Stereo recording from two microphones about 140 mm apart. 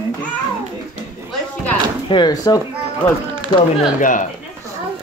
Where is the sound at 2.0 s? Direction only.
30° left (ahead or behind).